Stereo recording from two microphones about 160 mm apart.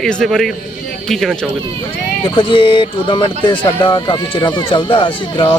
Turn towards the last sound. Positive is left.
turn(degrees=30)  # may be behind; listen again after turning